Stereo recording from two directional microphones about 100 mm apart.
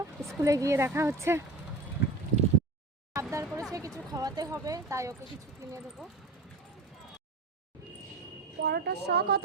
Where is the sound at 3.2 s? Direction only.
30° right (ahead or behind).